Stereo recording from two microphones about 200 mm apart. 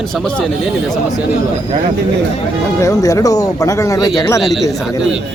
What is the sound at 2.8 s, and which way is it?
Speech, 15° left (ahead or behind).